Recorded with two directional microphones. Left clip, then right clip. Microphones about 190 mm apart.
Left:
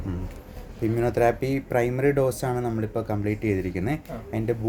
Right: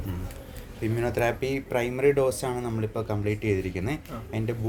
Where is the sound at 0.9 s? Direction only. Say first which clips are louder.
Left 4 dB; 40° left (ahead or behind).